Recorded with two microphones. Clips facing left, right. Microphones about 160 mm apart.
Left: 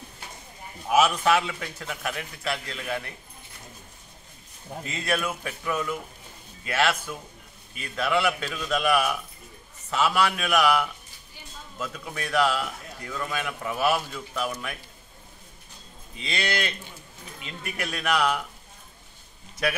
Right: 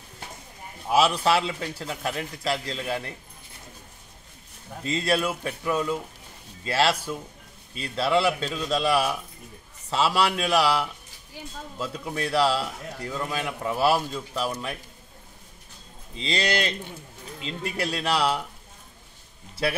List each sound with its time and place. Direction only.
0.8 s a man's voice: 30° right (ahead or behind)
4.8 s a man's voice: 35° right (ahead or behind)
16.2 s a man's voice: 35° right (ahead or behind)
19.6 s a man's voice: 30° right (ahead or behind)